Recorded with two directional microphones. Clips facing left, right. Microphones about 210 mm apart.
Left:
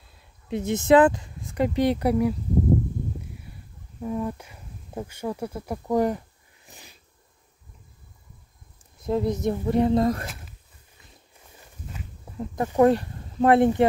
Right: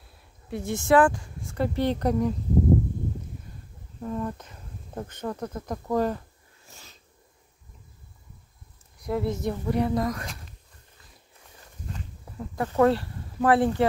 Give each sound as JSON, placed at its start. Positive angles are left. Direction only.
{"t": 0.5, "sound": "speech", "side_deg": 20}
{"t": 4.0, "sound": "speech", "side_deg": 10}
{"t": 9.0, "sound": "speech", "side_deg": 20}
{"t": 12.4, "sound": "speech", "side_deg": 15}